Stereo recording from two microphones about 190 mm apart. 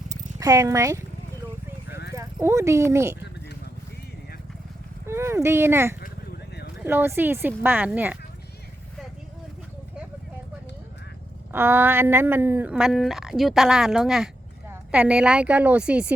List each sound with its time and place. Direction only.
0.1 s a sound: 20° right (ahead or behind)
2.1 s speech: 15° right (ahead or behind)
5.0 s speech: 15° right (ahead or behind)
6.0 s a sound: 55° left (ahead or behind)
6.8 s speech: 10° right (ahead or behind)
11.5 s speech: 10° right (ahead or behind)